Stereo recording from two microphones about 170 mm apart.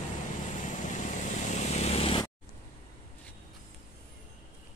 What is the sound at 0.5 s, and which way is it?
Vehicle, 45° left (ahead or behind).